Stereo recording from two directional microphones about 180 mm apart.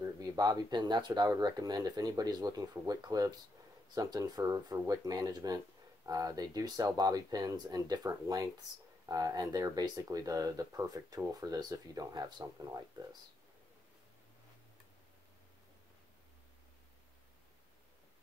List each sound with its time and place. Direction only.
0.0 s speech: 20° right (ahead or behind)